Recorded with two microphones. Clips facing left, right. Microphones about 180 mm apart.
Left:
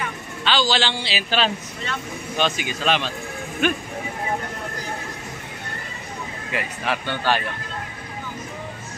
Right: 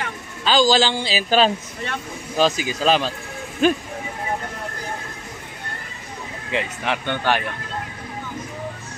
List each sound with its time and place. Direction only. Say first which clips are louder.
0.4 s a man's voice: right 5 dB; 40° right (ahead or behind)
6.5 s speech: right 2 dB; 20° right (ahead or behind)